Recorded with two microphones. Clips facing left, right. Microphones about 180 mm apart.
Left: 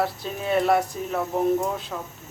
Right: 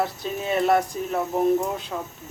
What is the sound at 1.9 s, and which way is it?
Speech, 10° right (ahead or behind).